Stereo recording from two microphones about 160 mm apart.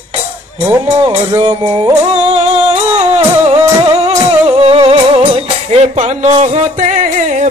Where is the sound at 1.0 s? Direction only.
40° right (ahead or behind).